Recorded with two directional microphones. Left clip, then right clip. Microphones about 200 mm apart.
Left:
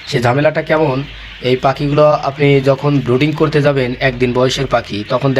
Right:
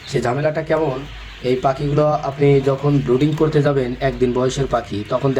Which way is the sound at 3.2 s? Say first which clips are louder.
Left 3 dB; 25° left (ahead or behind).